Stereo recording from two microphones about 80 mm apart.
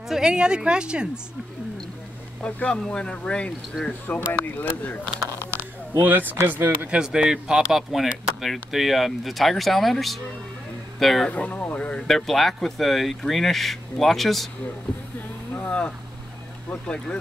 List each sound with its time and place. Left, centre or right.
0.1 s a woman's voice: centre
2.4 s speech: centre
5.3 s a sound: left
5.9 s speech: right
7.0 s speech: centre
11.2 s speech: centre
12.1 s speech: centre
15.5 s vehicle: centre
16.8 s speech: centre